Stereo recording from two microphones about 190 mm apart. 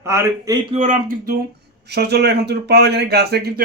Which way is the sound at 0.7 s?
40° right (ahead or behind).